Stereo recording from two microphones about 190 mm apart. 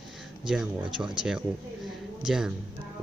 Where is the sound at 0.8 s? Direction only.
25° right (ahead or behind).